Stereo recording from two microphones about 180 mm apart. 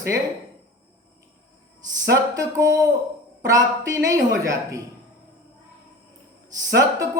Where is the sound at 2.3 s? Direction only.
20° right (ahead or behind).